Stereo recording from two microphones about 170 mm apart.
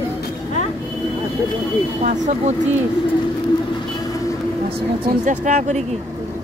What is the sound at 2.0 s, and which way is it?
Speech, 45° right (ahead or behind).